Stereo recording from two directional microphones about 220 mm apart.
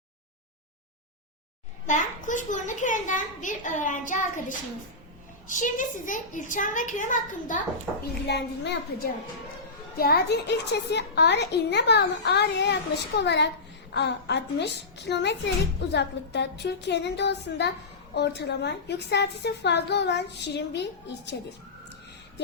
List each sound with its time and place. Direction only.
1.9 s a child's voice: 35° left (ahead or behind)
8.3 s a child's voice: 50° left (ahead or behind)